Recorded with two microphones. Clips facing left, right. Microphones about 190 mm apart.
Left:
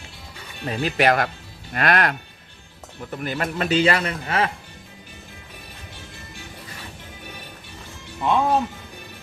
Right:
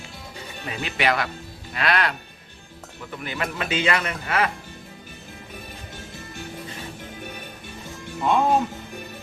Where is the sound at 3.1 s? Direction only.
40° left (ahead or behind).